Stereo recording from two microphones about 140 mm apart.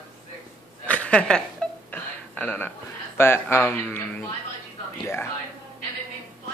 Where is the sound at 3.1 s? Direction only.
15° left (ahead or behind).